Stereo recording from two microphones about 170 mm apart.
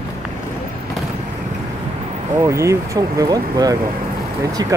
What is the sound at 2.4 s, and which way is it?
Speech, 15° right (ahead or behind).